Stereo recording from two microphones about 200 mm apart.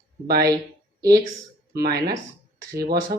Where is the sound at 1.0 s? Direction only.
20° right (ahead or behind).